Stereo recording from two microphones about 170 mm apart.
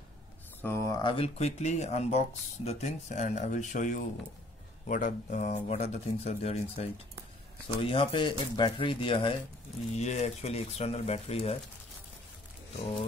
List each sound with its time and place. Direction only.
0.6 s speech: 15° left (ahead or behind); by 11.5 s 35° left (ahead or behind)